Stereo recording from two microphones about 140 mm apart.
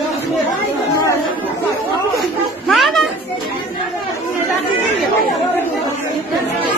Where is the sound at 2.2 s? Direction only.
Centre (ahead or behind).